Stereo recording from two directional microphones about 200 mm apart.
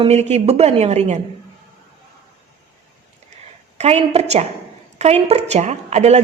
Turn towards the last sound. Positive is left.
turn(degrees=-35)  # may be behind; listen again after turning